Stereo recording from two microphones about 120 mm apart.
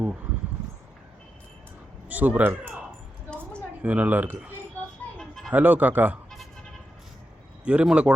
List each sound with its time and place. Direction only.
2.0 s speech: 15° right (ahead or behind)
3.8 s speech: 15° right (ahead or behind)
5.1 s a sound: 5° left (ahead or behind)
5.5 s speech: 15° right (ahead or behind)
7.6 s speech: 10° right (ahead or behind)